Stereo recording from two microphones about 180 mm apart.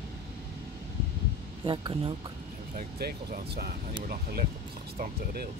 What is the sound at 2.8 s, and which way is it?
Speech, 55° right (ahead or behind).